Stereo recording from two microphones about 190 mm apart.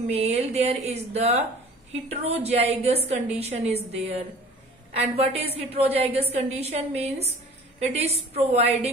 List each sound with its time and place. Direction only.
0.1 s speech: 35° right (ahead or behind)